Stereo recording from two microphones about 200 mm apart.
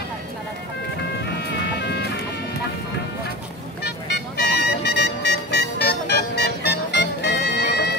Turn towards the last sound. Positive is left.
turn(degrees=55)  # may be behind; listen again after turning